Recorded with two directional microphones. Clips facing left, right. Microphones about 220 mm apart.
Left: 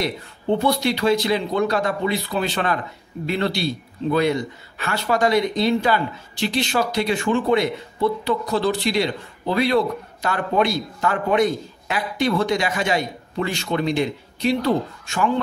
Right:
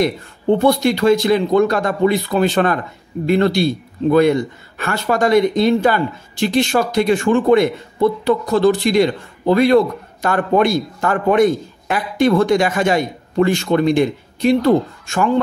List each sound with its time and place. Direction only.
0.6 s a man's voice: 50° right (ahead or behind)